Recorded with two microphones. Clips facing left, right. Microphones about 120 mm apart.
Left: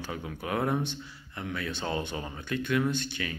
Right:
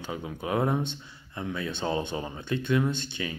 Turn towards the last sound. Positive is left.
turn(degrees=-20)  # may be behind; listen again after turning